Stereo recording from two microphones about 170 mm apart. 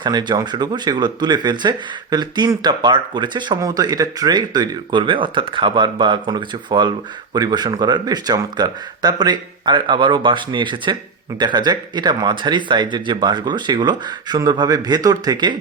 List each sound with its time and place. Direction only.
0.0 s speech: 25° right (ahead or behind)